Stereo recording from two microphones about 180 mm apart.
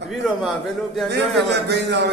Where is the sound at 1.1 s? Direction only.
70° right (ahead or behind).